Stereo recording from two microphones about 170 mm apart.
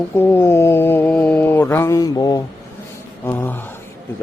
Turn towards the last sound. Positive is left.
turn(degrees=10)  # may be behind; listen again after turning